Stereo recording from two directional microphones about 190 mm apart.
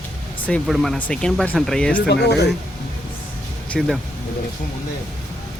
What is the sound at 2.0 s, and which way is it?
Whip, 65° left (ahead or behind).